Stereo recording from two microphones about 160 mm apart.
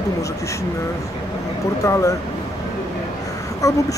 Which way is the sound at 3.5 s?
20° left (ahead or behind).